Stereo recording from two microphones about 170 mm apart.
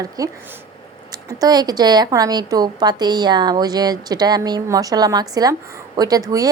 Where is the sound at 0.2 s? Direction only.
20° right (ahead or behind).